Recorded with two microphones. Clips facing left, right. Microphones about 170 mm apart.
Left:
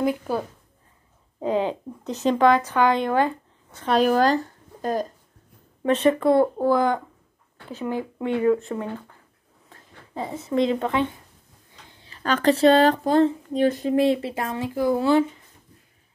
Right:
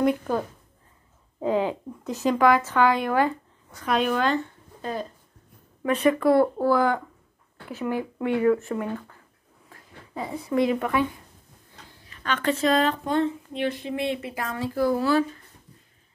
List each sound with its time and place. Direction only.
0.0 s speech: centre (ahead or behind)
1.4 s speech: 20° left (ahead or behind); by 5.0 s 40° left (ahead or behind)
5.9 s speech: 25° left (ahead or behind)
12.0 s speech: 35° left (ahead or behind)